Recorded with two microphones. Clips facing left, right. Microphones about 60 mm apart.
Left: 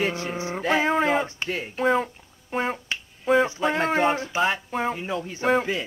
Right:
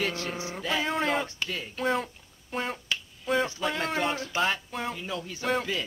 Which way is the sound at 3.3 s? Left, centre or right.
Left.